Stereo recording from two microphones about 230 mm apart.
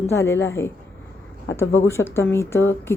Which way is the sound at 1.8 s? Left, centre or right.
Centre.